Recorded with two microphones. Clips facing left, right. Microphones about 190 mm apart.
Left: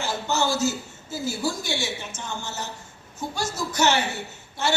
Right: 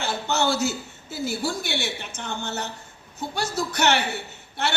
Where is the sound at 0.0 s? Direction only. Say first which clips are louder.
Right 1 dB; 65° right (ahead or behind).